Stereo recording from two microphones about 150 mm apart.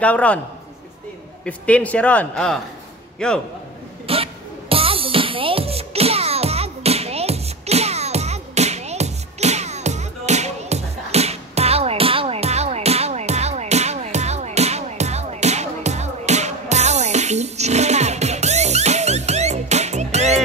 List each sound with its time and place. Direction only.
0.0 s a man's voice: 10° left (ahead or behind)
1.4 s a man's voice: 10° left (ahead or behind)
4.1 s music: 40° right (ahead or behind)